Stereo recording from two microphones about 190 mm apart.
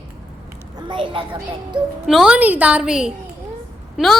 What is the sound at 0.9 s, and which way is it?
Speech, 25° right (ahead or behind).